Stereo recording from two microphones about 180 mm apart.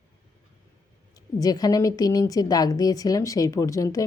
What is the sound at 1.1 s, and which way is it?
A woman's voice, 20° left (ahead or behind).